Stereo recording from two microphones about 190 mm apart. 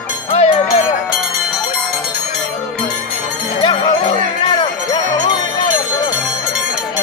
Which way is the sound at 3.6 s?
25° left (ahead or behind).